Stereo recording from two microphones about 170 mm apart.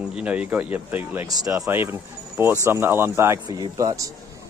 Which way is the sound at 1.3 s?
20° right (ahead or behind).